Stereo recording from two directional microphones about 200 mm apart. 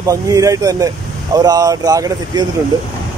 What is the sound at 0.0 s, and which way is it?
Speech, 15° right (ahead or behind).